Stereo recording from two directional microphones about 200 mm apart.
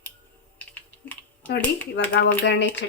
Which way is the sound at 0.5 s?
5° left (ahead or behind).